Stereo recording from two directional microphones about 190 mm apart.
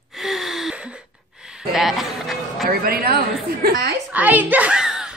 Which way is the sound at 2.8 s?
50° right (ahead or behind).